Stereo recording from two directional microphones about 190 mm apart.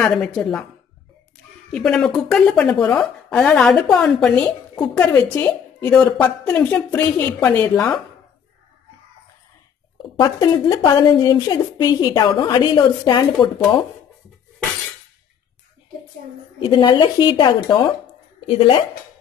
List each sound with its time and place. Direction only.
0.0 s speech: centre (ahead or behind)
1.7 s a woman's voice: 5° left (ahead or behind)
10.1 s a woman's voice: 20° left (ahead or behind)
16.5 s a woman's voice: 25° left (ahead or behind)